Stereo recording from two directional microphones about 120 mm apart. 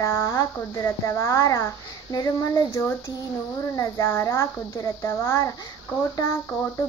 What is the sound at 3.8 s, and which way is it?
Speech, 25° left (ahead or behind).